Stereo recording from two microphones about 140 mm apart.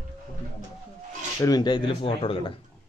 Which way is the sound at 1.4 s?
30° left (ahead or behind).